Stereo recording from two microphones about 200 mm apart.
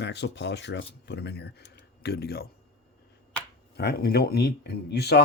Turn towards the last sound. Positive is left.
turn(degrees=55)  # may be behind; listen again after turning